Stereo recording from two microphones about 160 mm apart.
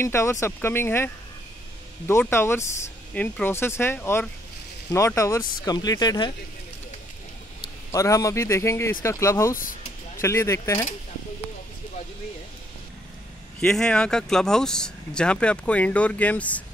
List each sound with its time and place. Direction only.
0.0 s a man's voice: 15° left (ahead or behind)
7.9 s a man's voice: 20° left (ahead or behind)
9.6 s vehicle: 60° left (ahead or behind)
10.2 s speech: 20° left (ahead or behind)
13.6 s speech: 5° left (ahead or behind)